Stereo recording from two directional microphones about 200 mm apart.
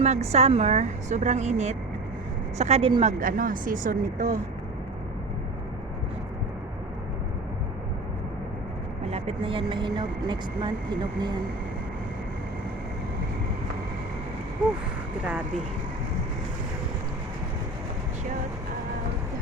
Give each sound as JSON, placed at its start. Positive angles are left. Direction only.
{"t": 0.0, "sound": "speech", "side_deg": -30}
{"t": 9.0, "sound": "speech", "side_deg": -30}